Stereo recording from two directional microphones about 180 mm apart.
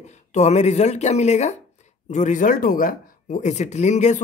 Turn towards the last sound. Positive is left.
turn(degrees=40)  # may be behind; listen again after turning